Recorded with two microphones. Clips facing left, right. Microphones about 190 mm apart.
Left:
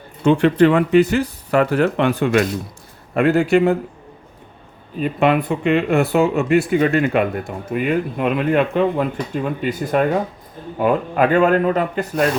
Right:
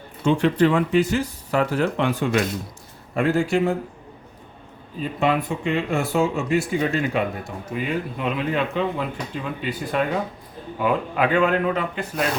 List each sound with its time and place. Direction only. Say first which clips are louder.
0.3 s speech: left 5 dB; 65° left (ahead or behind)
4.9 s speech: left 5 dB; 65° left (ahead or behind); by 12.3 s 45° left (ahead or behind)